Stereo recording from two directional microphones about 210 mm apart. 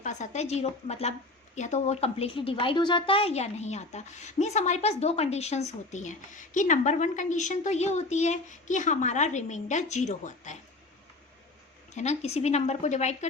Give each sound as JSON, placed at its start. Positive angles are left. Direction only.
{"t": 0.0, "sound": "a woman's voice", "side_deg": 35}
{"t": 11.9, "sound": "a woman's voice", "side_deg": 30}